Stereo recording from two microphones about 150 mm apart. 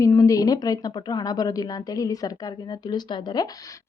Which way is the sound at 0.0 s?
20° left (ahead or behind).